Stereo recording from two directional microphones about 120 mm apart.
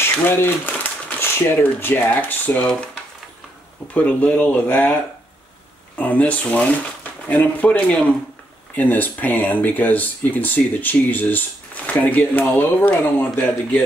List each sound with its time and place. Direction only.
0.0 s speech: 15° left (ahead or behind)
5.9 s speech: 10° left (ahead or behind)